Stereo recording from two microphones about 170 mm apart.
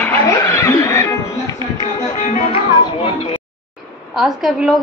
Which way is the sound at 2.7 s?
30° left (ahead or behind).